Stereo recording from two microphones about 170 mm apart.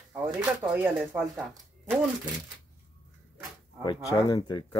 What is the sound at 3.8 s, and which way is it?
Speech, 25° left (ahead or behind).